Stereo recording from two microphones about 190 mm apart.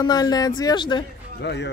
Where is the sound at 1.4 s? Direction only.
65° left (ahead or behind).